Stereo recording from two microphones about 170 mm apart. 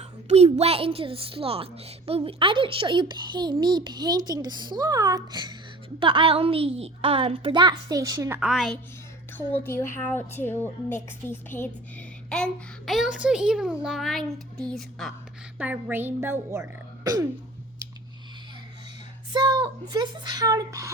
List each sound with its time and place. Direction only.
0.0 s a woman's voice: 40° right (ahead or behind); by 8.4 s 20° right (ahead or behind)
8.4 s a child's voice: 5° right (ahead or behind)
9.5 s a woman's voice: 15° left (ahead or behind)
12.3 s a child's voice: centre (ahead or behind)
15.5 s speech: 10° right (ahead or behind)
19.3 s a woman's voice: 25° right (ahead or behind)